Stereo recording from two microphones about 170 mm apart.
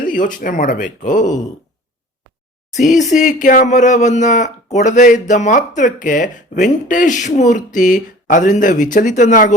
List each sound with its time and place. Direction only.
0.0 s speech: 50° left (ahead or behind)
2.9 s speech: 45° left (ahead or behind)